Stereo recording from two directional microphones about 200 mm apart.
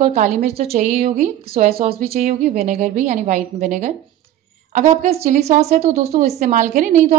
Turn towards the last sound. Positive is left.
turn(degrees=-40)  # may be behind; listen again after turning